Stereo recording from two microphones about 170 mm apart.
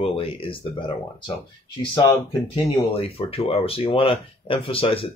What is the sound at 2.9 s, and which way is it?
Speech, 35° left (ahead or behind).